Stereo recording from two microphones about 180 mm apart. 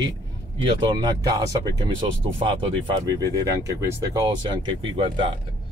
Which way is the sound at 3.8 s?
20° right (ahead or behind).